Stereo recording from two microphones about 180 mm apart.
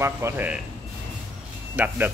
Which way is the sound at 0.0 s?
10° right (ahead or behind).